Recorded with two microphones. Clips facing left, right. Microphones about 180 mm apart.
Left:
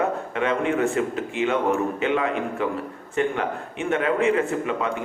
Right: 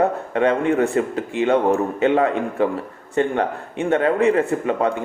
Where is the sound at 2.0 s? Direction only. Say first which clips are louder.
Right 8 dB; 40° right (ahead or behind).